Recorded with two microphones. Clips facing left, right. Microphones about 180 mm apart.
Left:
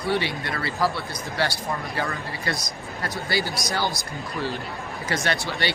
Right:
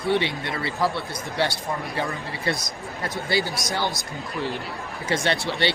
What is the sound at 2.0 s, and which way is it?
Speech, 25° right (ahead or behind).